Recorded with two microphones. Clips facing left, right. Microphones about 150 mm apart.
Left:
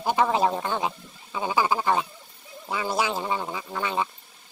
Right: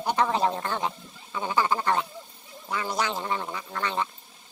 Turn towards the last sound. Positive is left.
turn(degrees=10)  # may be behind; listen again after turning